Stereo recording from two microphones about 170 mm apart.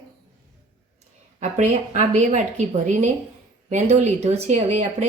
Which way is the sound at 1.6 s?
45° right (ahead or behind).